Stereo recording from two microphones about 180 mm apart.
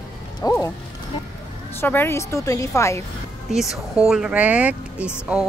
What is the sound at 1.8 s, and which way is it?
A woman's voice, 10° left (ahead or behind).